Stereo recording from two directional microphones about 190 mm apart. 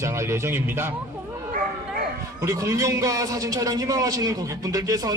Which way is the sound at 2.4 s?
15° right (ahead or behind).